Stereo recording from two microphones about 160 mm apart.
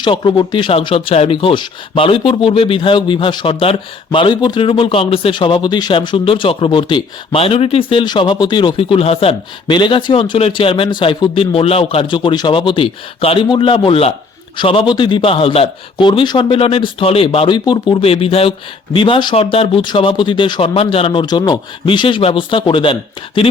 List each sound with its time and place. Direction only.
0.0 s speech: 30° left (ahead or behind)